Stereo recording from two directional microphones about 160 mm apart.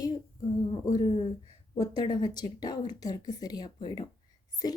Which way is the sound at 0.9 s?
30° left (ahead or behind).